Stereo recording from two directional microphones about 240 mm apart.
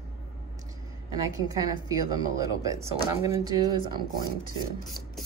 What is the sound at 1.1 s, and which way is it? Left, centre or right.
Speech, centre.